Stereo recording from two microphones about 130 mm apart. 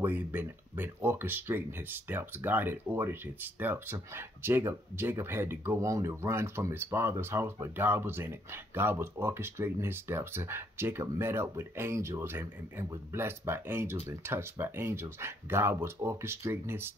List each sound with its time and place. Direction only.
0.0 s speech: 15° right (ahead or behind)